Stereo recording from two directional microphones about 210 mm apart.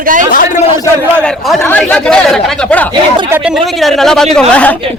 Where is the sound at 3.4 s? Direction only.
Centre (ahead or behind).